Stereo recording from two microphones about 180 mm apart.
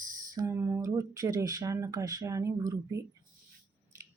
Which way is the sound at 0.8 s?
20° right (ahead or behind).